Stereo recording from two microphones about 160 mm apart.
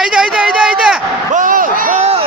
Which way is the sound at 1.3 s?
55° right (ahead or behind).